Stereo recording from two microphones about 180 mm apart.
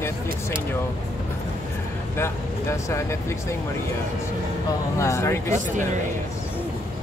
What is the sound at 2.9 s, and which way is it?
Speech, 15° left (ahead or behind).